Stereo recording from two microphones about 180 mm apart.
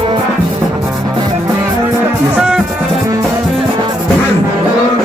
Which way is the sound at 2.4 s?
5° right (ahead or behind).